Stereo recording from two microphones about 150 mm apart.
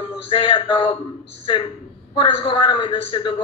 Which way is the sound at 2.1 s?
35° left (ahead or behind).